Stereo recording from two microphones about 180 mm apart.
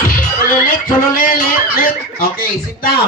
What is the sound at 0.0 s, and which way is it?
Music, 50° left (ahead or behind).